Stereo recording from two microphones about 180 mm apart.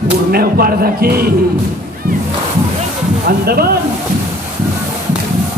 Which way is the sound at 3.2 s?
60° right (ahead or behind).